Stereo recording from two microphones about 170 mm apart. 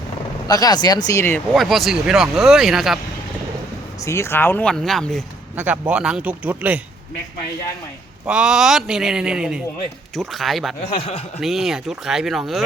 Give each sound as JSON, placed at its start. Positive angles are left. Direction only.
{"t": 0.4, "sound": "speech", "side_deg": 20}
{"t": 1.5, "sound": "speech", "side_deg": 0}
{"t": 4.0, "sound": "speech", "side_deg": 15}
{"t": 5.5, "sound": "speech", "side_deg": -10}
{"t": 8.3, "sound": "speech", "side_deg": -5}
{"t": 10.8, "sound": "speech", "side_deg": 35}
{"t": 11.3, "sound": "speech", "side_deg": 0}